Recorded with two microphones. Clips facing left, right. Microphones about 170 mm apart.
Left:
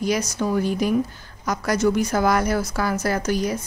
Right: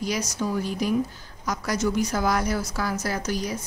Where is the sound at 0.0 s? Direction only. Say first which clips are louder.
Left 4 dB; 60° left (ahead or behind).